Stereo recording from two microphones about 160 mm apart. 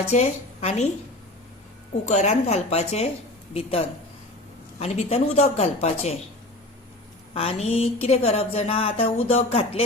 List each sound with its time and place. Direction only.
0.1 s a woman's voice: 45° left (ahead or behind)
2.0 s speech: 45° left (ahead or behind)
7.3 s speech: 40° left (ahead or behind)